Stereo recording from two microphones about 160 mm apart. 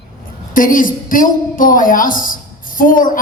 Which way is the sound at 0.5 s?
60° left (ahead or behind).